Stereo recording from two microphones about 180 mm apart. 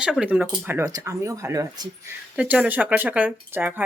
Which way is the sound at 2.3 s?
5° right (ahead or behind).